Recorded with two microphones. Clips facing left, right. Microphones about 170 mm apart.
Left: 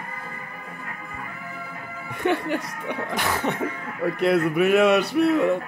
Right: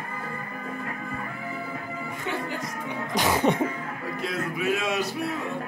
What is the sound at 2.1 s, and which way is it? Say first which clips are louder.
Music: left 9 dB; 65° left (ahead or behind).